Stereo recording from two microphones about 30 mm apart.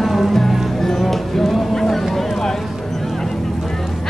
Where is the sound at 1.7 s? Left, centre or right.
Centre.